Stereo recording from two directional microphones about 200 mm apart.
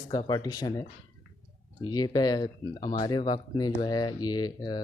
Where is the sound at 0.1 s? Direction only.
25° left (ahead or behind).